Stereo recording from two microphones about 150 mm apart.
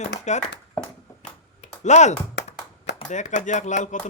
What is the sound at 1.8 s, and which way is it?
Speech, 50° left (ahead or behind).